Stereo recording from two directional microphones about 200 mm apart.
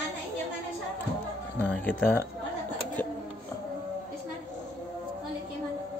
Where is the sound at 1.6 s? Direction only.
10° left (ahead or behind).